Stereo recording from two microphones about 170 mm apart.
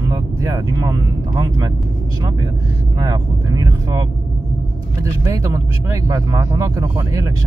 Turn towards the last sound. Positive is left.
turn(degrees=-20)  # may be behind; listen again after turning